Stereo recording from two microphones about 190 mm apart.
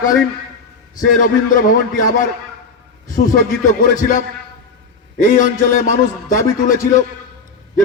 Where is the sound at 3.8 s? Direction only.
45° left (ahead or behind).